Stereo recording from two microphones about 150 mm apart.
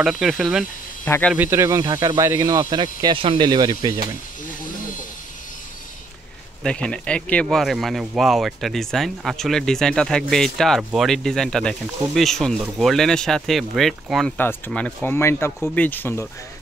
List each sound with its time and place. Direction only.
0.0 s speech: centre (ahead or behind)
1.0 s speech: 15° left (ahead or behind)
1.3 s speech: 15° right (ahead or behind)
6.6 s speech: 5° left (ahead or behind)
14.3 s speech: 15° left (ahead or behind)